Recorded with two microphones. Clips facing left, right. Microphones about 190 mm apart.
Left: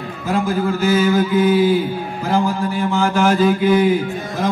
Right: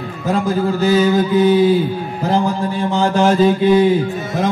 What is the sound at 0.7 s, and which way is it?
Mantra, 35° right (ahead or behind).